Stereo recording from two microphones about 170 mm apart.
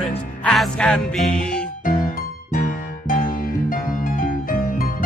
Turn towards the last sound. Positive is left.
turn(degrees=55)  # may be behind; listen again after turning